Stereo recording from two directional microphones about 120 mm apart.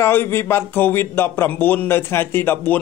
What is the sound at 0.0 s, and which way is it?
Speech, 20° left (ahead or behind).